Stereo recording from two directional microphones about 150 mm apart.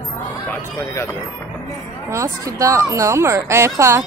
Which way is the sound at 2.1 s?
20° right (ahead or behind).